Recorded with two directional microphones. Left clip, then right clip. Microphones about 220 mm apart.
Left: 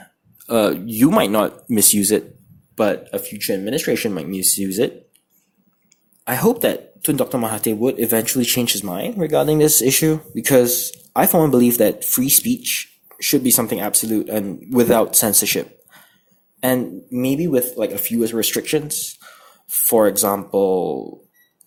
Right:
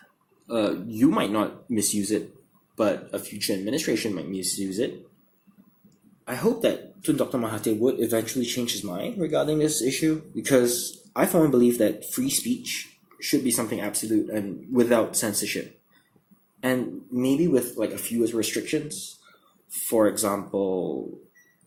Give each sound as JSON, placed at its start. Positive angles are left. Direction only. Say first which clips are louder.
{"t": 0.4, "sound": "speech", "louder": "left 8 dB", "side_deg": 40}
{"t": 6.2, "sound": "speech", "louder": "left 6 dB", "side_deg": 45}